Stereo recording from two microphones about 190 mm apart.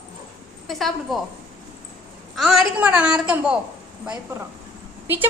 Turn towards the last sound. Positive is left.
turn(degrees=-10)  # may be behind; listen again after turning